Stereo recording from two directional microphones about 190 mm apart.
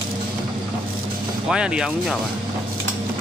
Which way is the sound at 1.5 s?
5° right (ahead or behind).